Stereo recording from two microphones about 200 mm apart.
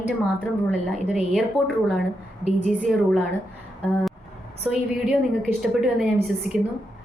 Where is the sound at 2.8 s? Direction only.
Centre (ahead or behind).